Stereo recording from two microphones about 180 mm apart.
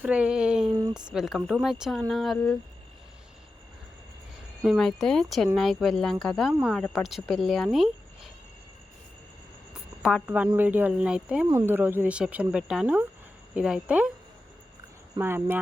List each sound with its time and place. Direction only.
0.0 s a sound: 5° right (ahead or behind)
0.7 s a sound: 20° right (ahead or behind)
1.1 s speech: centre (ahead or behind)
4.6 s speech: centre (ahead or behind)
10.0 s speech: centre (ahead or behind)
15.2 s speech: 10° right (ahead or behind)